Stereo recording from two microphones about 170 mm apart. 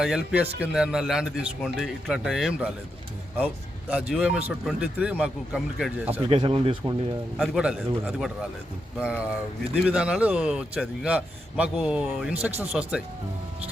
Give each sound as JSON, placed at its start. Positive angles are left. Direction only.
{"t": 0.0, "sound": "a man's voice", "side_deg": -5}
{"t": 6.1, "sound": "speech", "side_deg": -30}
{"t": 7.3, "sound": "a man's voice", "side_deg": 0}